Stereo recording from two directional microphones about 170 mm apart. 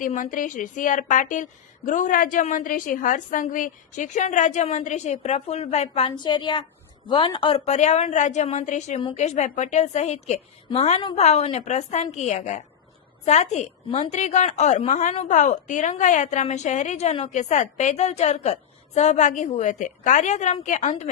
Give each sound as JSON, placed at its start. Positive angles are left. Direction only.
{"t": 0.0, "sound": "a woman's voice", "side_deg": 50}